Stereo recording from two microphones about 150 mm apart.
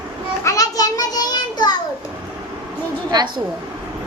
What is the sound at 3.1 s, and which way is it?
Speech, 30° right (ahead or behind).